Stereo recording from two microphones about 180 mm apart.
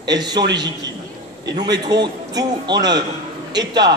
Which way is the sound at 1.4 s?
20° right (ahead or behind).